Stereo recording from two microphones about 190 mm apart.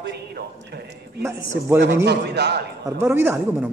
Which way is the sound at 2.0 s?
60° right (ahead or behind).